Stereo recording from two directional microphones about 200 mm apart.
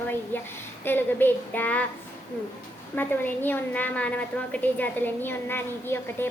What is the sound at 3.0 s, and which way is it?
A woman's voice, 10° left (ahead or behind).